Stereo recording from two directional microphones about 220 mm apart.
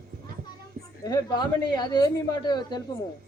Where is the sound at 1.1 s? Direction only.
20° left (ahead or behind).